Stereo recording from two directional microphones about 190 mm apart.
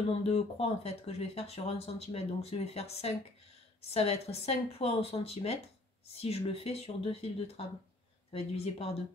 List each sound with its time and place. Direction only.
0.3 s speech: 35° left (ahead or behind)